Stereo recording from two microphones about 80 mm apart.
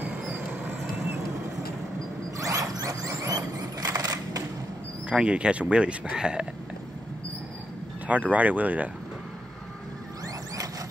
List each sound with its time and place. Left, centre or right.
0.0 s vehicle: centre
2.3 s a sound: right
5.1 s speech: centre
8.1 s speech: centre
10.2 s zipper: right